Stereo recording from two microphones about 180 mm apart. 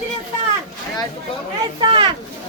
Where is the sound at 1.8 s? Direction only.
25° right (ahead or behind).